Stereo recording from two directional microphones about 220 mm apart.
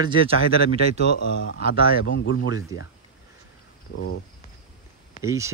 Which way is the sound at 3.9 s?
45° left (ahead or behind).